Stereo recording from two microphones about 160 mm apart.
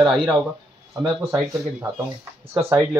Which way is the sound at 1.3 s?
20° right (ahead or behind).